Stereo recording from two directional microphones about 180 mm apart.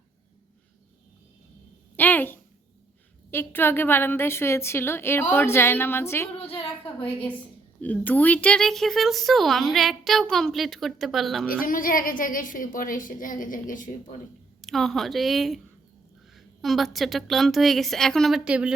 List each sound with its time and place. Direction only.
2.0 s a sound: 10° left (ahead or behind)
3.3 s a woman's voice: 10° left (ahead or behind)
6.4 s a woman's voice: 30° left (ahead or behind)
7.8 s speech: 10° left (ahead or behind)
11.4 s a woman's voice: 50° left (ahead or behind)
14.6 s speech: centre (ahead or behind)